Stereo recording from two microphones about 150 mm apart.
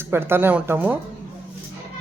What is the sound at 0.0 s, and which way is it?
Speech, 15° right (ahead or behind).